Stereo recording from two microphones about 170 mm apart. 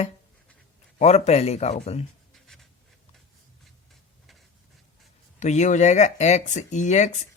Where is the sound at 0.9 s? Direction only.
40° left (ahead or behind).